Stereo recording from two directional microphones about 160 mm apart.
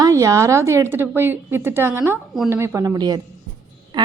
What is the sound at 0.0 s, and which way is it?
A woman's voice, 20° right (ahead or behind).